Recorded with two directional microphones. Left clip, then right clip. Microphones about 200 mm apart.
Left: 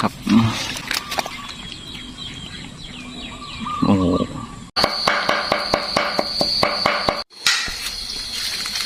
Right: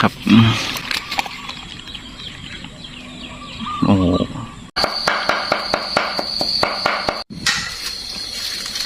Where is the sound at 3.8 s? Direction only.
Centre (ahead or behind).